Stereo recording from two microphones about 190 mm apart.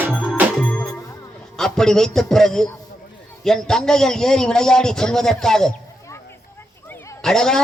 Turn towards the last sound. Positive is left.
turn(degrees=5)  # may be behind; listen again after turning